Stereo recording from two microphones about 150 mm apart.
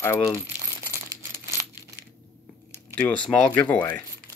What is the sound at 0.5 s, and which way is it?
Crumpling, 15° right (ahead or behind).